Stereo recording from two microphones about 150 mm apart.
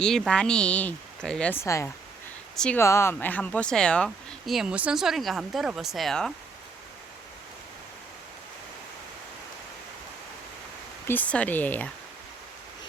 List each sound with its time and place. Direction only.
0.0 s speech: 5° left (ahead or behind)
1.6 s speech: 20° left (ahead or behind)
2.6 s speech: 5° left (ahead or behind)
2.8 s speech: 20° left (ahead or behind); by 6.3 s centre (ahead or behind)
11.1 s speech: 10° left (ahead or behind)